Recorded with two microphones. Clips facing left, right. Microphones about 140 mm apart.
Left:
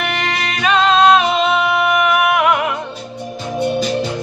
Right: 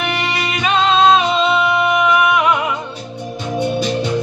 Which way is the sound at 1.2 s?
55° left (ahead or behind).